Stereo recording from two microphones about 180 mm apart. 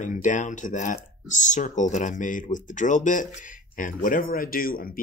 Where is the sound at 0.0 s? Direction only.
45° left (ahead or behind).